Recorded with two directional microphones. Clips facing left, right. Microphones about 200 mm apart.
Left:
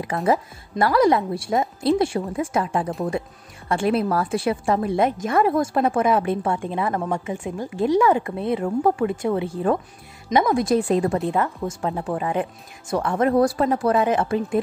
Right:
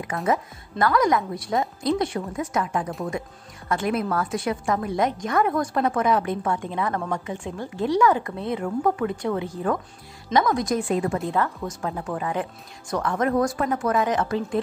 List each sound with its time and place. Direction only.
0.0 s a woman's voice: 35° left (ahead or behind); by 7.9 s 10° left (ahead or behind)
8.2 s a woman's voice: 25° left (ahead or behind)
11.1 s a woman's voice: 20° left (ahead or behind)